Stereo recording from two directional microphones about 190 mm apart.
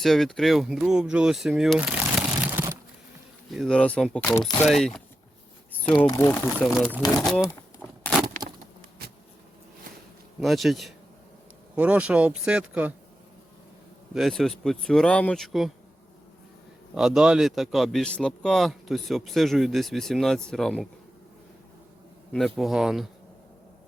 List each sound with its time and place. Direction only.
0.0 s speech: centre (ahead or behind)
3.5 s a man's voice: 5° left (ahead or behind)
4.3 s speech: 20° left (ahead or behind)
4.6 s a man's voice: centre (ahead or behind)
6.0 s speech: 15° left (ahead or behind)
6.7 s a man's voice: centre (ahead or behind)
7.8 s a sound: 5° right (ahead or behind)
8.4 s a sound: 25° right (ahead or behind)
10.4 s a man's voice: centre (ahead or behind)
14.1 s a man's voice: centre (ahead or behind)
16.9 s a man's voice: 5° right (ahead or behind)
22.3 s a man's voice: centre (ahead or behind)